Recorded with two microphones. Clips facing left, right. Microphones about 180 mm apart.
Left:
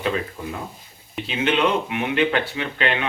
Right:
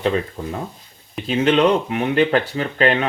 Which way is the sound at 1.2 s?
40° right (ahead or behind).